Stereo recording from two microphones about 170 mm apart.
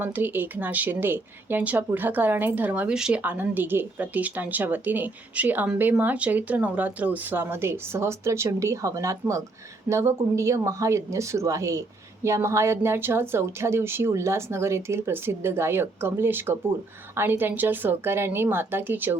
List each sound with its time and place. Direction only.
0.0 s a woman's voice: 10° right (ahead or behind)